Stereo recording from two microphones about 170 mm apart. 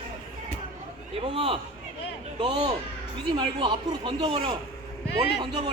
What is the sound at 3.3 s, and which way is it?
Speech, 30° right (ahead or behind).